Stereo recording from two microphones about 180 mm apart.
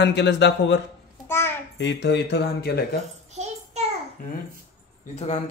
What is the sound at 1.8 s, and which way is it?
Speech, 75° left (ahead or behind).